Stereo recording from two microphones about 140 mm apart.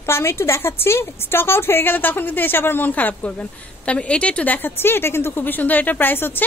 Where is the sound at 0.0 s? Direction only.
20° left (ahead or behind).